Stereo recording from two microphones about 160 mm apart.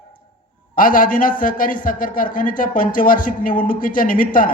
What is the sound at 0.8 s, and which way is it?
A man's voice, 60° left (ahead or behind).